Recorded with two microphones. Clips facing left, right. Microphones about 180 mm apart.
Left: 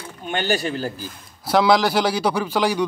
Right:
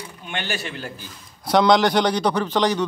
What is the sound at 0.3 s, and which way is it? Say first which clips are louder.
Speech: left 7 dB; 40° left (ahead or behind).